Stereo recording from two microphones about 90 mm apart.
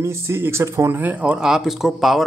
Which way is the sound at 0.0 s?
30° right (ahead or behind).